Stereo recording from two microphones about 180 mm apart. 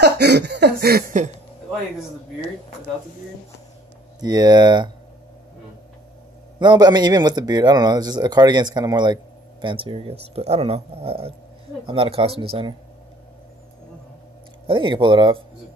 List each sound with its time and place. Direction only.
0.0 s chuckle: 70° right (ahead or behind); by 1.3 s 45° right (ahead or behind)
4.2 s speech: 20° right (ahead or behind)
6.6 s speech: 25° right (ahead or behind)
14.7 s speech: 25° right (ahead or behind)